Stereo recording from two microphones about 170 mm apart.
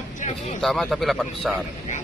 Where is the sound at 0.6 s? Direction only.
Centre (ahead or behind).